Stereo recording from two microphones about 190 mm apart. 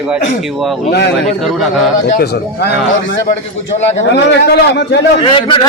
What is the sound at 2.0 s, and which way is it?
A man's voice, 50° left (ahead or behind).